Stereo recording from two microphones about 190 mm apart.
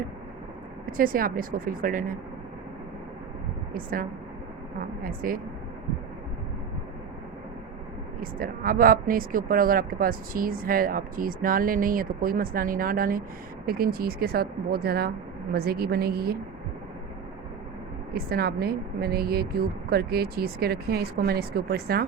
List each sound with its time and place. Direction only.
0.9 s speech: 50° right (ahead or behind)
3.8 s speech: 50° right (ahead or behind)
5.0 s speech: 50° right (ahead or behind)
8.2 s a woman's voice: 50° right (ahead or behind)
18.1 s a woman's voice: 55° right (ahead or behind)